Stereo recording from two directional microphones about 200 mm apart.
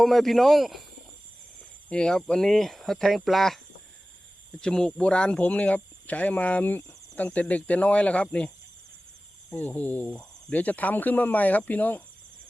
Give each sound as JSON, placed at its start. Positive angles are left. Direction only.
{"t": 0.0, "sound": "speech", "side_deg": 0}
{"t": 1.9, "sound": "speech", "side_deg": 5}
{"t": 4.6, "sound": "speech", "side_deg": 5}
{"t": 9.5, "sound": "speech", "side_deg": 10}